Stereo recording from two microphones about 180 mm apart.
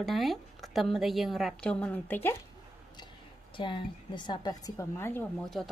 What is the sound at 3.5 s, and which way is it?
A woman's voice, 25° left (ahead or behind).